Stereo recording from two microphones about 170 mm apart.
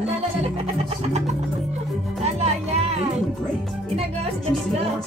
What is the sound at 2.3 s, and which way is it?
Music, 40° right (ahead or behind).